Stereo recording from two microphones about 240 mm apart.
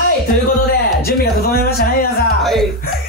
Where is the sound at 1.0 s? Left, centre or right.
Left.